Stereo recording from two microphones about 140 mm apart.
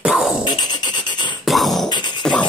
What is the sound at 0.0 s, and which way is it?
Music, 5° right (ahead or behind).